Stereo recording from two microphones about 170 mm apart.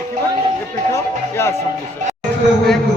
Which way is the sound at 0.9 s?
15° left (ahead or behind).